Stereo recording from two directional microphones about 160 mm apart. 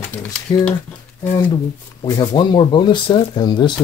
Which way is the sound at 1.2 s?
20° left (ahead or behind).